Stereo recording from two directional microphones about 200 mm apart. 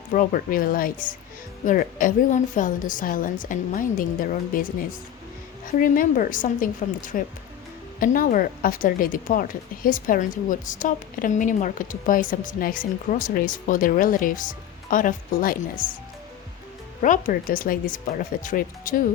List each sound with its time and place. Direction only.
0.1 s speech: 45° left (ahead or behind)
17.0 s speech: 40° left (ahead or behind)